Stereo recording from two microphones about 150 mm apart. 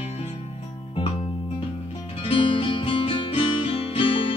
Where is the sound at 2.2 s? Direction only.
35° left (ahead or behind).